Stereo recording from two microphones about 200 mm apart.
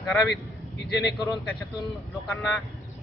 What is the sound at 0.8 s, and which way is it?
Speech, 55° left (ahead or behind).